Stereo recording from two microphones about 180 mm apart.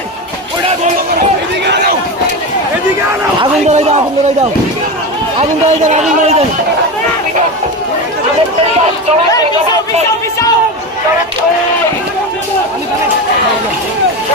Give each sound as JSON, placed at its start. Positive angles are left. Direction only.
{"t": 3.4, "sound": "a man's voice", "side_deg": -35}
{"t": 5.4, "sound": "a man's voice", "side_deg": -40}